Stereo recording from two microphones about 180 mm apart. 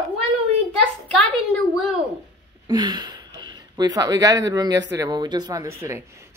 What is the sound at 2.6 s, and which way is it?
A woman's voice, 25° right (ahead or behind).